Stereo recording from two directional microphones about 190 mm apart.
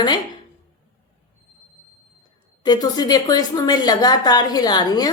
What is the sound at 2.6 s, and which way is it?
A woman's voice, 20° left (ahead or behind).